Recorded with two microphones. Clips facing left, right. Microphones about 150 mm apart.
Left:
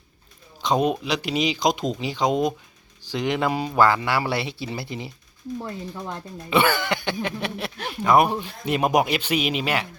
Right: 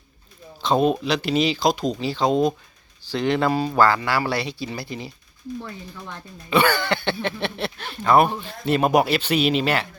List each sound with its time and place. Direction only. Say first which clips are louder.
0.6 s speech: right 2 dB; 15° left (ahead or behind)
5.5 s speech: left 6 dB; 35° left (ahead or behind)
6.5 s speech: right 1 dB; 20° left (ahead or behind)